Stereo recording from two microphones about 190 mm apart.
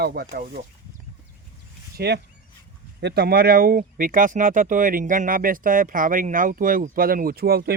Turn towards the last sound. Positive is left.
turn(degrees=-55)  # may be behind; listen again after turning